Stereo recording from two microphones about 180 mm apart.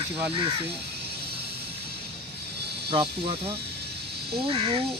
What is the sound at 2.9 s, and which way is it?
Speech, 30° right (ahead or behind).